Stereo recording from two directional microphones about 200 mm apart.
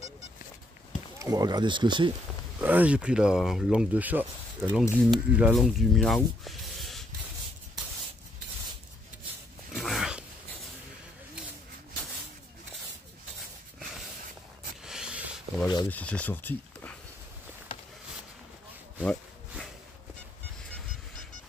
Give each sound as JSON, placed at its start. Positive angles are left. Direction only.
{"t": 1.2, "sound": "speech", "side_deg": -20}
{"t": 2.6, "sound": "speech", "side_deg": -10}
{"t": 9.8, "sound": "dog", "side_deg": 0}
{"t": 14.9, "sound": "a sound", "side_deg": -5}
{"t": 15.6, "sound": "rub", "side_deg": 20}
{"t": 15.9, "sound": "speech", "side_deg": 5}
{"t": 18.9, "sound": "sawing", "side_deg": 0}